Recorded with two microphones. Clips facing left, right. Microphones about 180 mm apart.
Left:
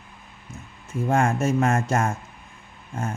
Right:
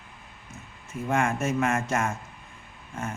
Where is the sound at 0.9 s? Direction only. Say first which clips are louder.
Left 4 dB; 35° left (ahead or behind).